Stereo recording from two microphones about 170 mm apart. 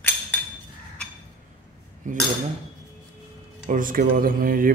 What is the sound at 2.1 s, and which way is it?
Cutlery, 50° right (ahead or behind).